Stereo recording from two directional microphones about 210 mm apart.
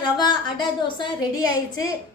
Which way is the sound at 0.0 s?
20° left (ahead or behind).